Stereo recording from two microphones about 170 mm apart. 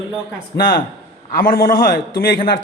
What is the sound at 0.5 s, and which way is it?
A man's voice, 55° left (ahead or behind).